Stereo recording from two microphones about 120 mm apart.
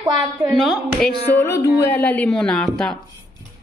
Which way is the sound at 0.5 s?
Centre (ahead or behind).